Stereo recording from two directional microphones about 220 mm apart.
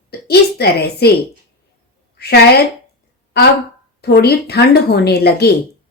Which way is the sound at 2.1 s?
45° left (ahead or behind).